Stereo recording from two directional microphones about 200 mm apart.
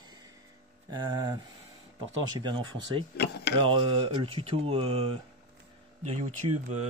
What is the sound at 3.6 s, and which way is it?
Speech, 25° right (ahead or behind).